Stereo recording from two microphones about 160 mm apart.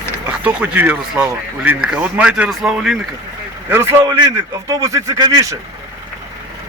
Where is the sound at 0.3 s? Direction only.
10° right (ahead or behind).